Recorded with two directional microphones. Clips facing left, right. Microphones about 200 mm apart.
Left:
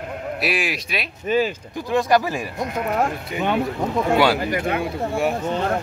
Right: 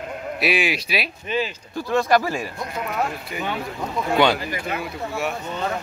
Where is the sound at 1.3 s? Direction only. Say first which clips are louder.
Left 5 dB; 45° left (ahead or behind).